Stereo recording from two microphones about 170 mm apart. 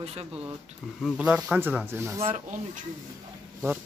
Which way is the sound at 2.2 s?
35° right (ahead or behind).